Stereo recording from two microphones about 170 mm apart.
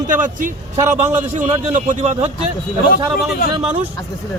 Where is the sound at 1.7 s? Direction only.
45° right (ahead or behind).